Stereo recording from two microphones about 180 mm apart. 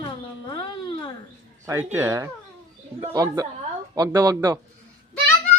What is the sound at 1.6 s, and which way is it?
A man's voice, 10° right (ahead or behind).